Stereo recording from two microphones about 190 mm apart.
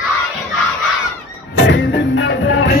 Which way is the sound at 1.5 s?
70° left (ahead or behind).